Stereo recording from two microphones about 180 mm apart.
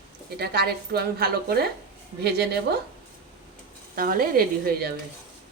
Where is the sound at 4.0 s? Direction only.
55° right (ahead or behind).